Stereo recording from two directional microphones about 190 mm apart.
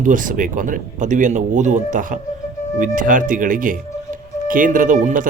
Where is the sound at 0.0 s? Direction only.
45° right (ahead or behind).